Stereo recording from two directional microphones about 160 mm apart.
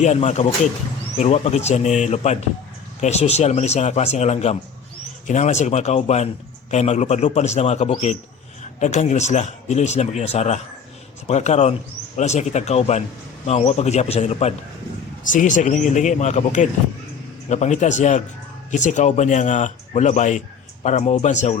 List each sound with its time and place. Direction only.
0.0 s speech: 45° left (ahead or behind)
15.2 s speech: 55° left (ahead or behind)